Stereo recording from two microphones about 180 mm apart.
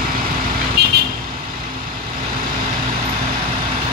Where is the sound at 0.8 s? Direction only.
65° right (ahead or behind).